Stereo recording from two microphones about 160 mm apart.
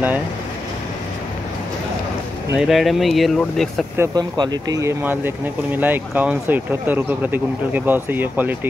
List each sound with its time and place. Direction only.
2.5 s speech: centre (ahead or behind)
4.0 s speech: 25° right (ahead or behind)